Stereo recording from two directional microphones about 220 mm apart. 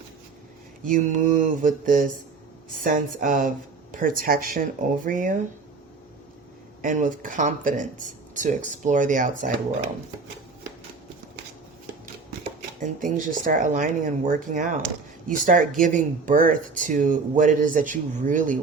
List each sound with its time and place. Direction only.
0.9 s speech: 35° right (ahead or behind)
6.8 s speech: 35° right (ahead or behind)
12.8 s speech: 35° right (ahead or behind)